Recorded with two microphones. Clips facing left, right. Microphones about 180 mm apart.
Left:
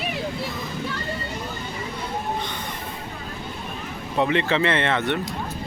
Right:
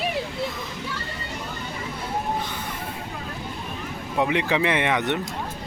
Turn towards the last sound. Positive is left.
turn(degrees=-15)  # may be behind; listen again after turning